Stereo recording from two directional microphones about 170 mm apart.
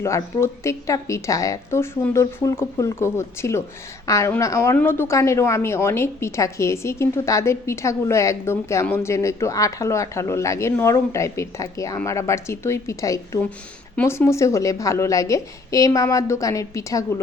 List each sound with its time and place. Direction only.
0.0 s a woman's voice: 15° left (ahead or behind)